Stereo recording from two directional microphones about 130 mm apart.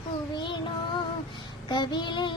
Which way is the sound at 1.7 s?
35° left (ahead or behind).